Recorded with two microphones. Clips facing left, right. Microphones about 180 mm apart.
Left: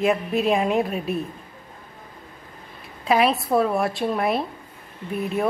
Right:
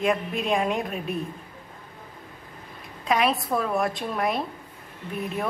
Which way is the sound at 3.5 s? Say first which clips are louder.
Left 6 dB; 25° left (ahead or behind).